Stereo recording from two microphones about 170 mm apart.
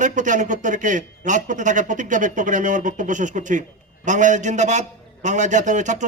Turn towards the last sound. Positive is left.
turn(degrees=-45)  # may be behind; listen again after turning